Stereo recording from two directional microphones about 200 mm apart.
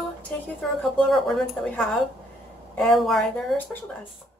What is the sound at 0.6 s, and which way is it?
Speech, centre (ahead or behind).